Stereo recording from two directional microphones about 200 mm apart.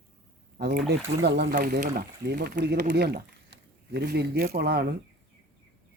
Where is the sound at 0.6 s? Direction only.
55° right (ahead or behind).